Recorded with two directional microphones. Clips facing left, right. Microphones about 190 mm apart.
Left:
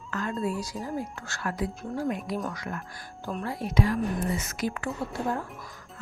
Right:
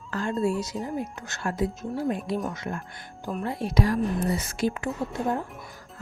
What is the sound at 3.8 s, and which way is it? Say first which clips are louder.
A woman's voice: right 2 dB; 40° right (ahead or behind).